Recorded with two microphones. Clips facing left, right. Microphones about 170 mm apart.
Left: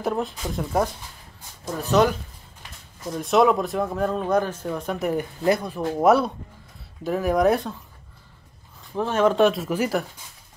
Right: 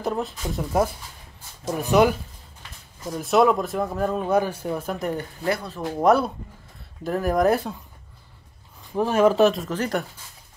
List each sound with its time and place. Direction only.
0.0 s speech: centre (ahead or behind)
1.7 s speech: 15° right (ahead or behind)
4.9 s speech: 5° left (ahead or behind)
5.4 s speech: 15° left (ahead or behind)
5.8 s speech: centre (ahead or behind)
8.9 s speech: 10° right (ahead or behind); by 10.0 s 5° left (ahead or behind)